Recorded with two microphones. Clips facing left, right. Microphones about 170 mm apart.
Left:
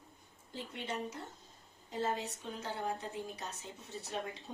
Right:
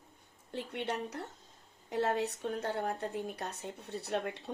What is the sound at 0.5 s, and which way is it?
A woman's voice, 70° right (ahead or behind).